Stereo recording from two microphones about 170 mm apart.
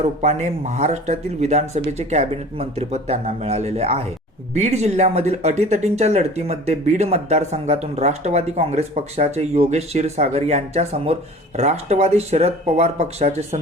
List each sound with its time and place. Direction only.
0.2 s speech: 40° right (ahead or behind)